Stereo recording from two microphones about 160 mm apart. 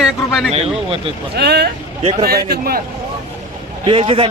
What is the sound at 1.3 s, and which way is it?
Speech, 90° right.